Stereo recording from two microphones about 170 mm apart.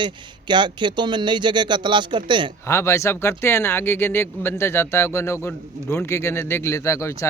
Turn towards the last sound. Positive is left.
turn(degrees=15)  # may be behind; listen again after turning